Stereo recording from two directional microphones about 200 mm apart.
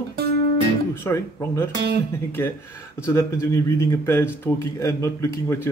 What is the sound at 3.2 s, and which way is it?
Speech, 15° left (ahead or behind).